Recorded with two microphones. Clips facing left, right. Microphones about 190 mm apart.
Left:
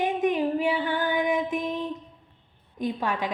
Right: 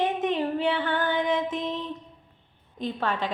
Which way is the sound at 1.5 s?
20° right (ahead or behind).